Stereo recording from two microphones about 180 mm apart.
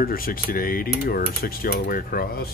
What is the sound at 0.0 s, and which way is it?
Speech, 55° left (ahead or behind).